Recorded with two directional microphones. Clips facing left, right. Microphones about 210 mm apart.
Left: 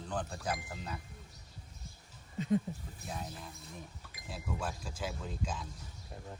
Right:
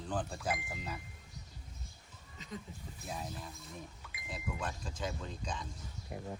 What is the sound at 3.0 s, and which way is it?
Speech, centre (ahead or behind).